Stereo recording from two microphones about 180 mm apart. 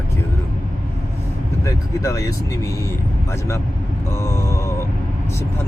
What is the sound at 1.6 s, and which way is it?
Speech, 20° left (ahead or behind).